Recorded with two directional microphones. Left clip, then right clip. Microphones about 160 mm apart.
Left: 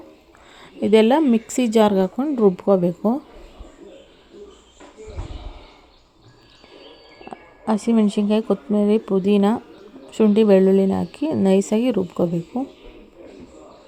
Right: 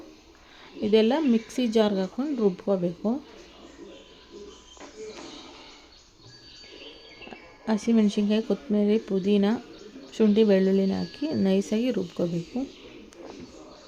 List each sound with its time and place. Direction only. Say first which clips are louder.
0.8 s speech: left 7 dB; 35° left (ahead or behind)
7.3 s speech: left 6 dB; 25° left (ahead or behind)